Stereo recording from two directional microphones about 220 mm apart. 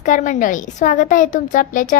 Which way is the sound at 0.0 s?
35° left (ahead or behind).